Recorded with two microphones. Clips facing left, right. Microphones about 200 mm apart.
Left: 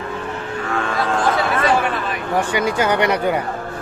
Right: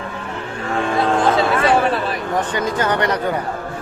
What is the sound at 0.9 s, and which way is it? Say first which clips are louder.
Music: right 4 dB; 25° right (ahead or behind).